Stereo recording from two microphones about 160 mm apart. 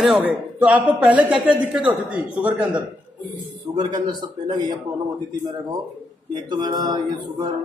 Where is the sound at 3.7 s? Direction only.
25° right (ahead or behind).